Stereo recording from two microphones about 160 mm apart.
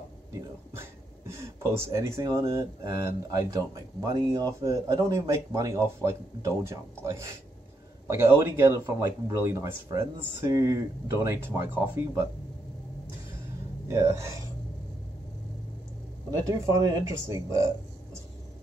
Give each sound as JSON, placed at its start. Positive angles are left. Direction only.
{"t": 0.3, "sound": "speech", "side_deg": -20}
{"t": 13.8, "sound": "speech", "side_deg": -20}
{"t": 16.3, "sound": "speech", "side_deg": -20}